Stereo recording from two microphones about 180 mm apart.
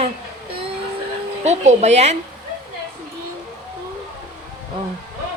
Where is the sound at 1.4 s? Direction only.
40° right (ahead or behind).